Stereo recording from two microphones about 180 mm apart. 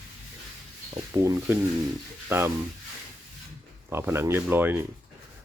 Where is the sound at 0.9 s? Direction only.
20° right (ahead or behind).